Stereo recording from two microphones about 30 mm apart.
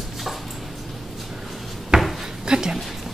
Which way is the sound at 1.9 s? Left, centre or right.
Right.